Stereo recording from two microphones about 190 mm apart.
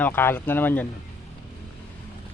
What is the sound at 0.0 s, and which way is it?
Speech, 10° left (ahead or behind).